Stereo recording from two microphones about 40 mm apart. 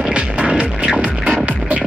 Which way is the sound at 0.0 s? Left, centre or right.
Right.